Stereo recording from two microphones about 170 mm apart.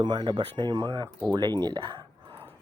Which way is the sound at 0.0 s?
25° right (ahead or behind).